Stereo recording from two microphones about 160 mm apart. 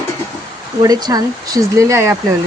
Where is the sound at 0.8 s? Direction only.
25° right (ahead or behind).